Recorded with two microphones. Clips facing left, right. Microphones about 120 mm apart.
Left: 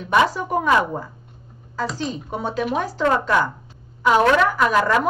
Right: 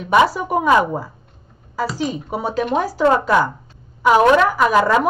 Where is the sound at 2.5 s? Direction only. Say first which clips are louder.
Right 4 dB; centre (ahead or behind).